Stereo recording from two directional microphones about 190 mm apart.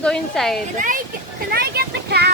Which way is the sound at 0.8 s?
45° right (ahead or behind).